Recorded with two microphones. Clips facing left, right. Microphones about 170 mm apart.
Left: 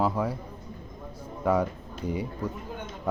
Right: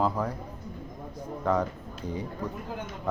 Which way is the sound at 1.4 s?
10° left (ahead or behind).